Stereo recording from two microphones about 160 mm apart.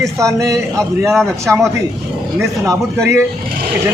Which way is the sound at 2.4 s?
15° right (ahead or behind).